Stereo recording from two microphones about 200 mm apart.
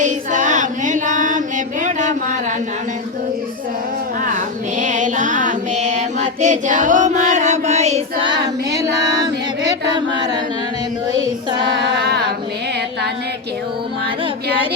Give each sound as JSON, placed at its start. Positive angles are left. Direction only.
{"t": 0.0, "sound": "female singing", "side_deg": -40}
{"t": 4.2, "sound": "female singing", "side_deg": -40}
{"t": 10.2, "sound": "singing", "side_deg": -20}
{"t": 11.7, "sound": "child singing", "side_deg": -55}